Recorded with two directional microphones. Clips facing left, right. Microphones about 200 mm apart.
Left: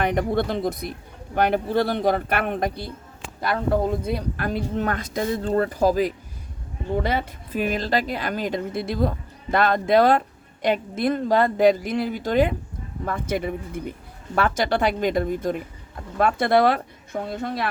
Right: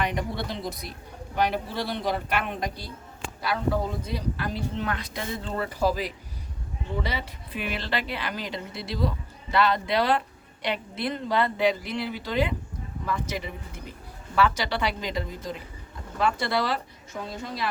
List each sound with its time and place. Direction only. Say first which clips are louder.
0.0 s a woman's voice: left 7 dB; 50° left (ahead or behind)
4.0 s a woman's voice: left 5 dB; 55° left (ahead or behind)